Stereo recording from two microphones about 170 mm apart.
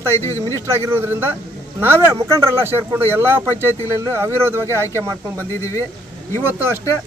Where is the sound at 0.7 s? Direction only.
15° right (ahead or behind).